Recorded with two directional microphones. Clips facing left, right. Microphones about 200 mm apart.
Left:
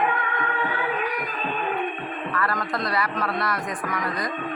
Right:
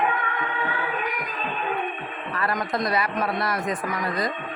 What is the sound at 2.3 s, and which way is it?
A man's voice, 20° right (ahead or behind).